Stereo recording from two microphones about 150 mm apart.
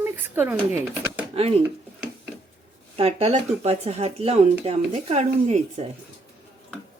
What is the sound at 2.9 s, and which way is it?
Speech, 45° right (ahead or behind).